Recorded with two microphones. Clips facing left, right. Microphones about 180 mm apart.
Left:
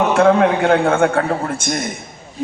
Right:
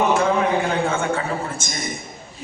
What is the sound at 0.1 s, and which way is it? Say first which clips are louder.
A man's voice: left 6 dB; 70° left (ahead or behind).